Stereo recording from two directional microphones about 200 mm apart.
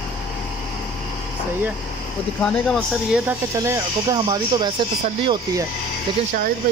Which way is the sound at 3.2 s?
15° right (ahead or behind).